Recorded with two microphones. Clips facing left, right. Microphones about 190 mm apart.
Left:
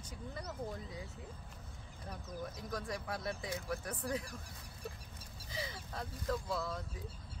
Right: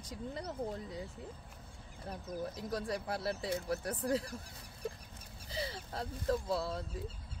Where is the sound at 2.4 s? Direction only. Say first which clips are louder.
Right 4 dB; 30° right (ahead or behind).